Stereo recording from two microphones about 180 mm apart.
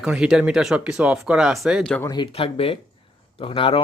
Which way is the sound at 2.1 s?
30° left (ahead or behind).